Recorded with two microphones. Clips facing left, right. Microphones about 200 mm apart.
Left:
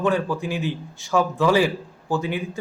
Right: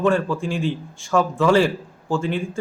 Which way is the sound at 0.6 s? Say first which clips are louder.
Right 3 dB; 20° left (ahead or behind).